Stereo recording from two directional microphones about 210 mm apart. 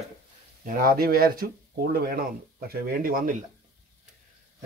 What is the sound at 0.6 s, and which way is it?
Speech, 40° right (ahead or behind).